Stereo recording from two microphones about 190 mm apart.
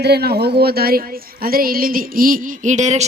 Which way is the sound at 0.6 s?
55° right (ahead or behind).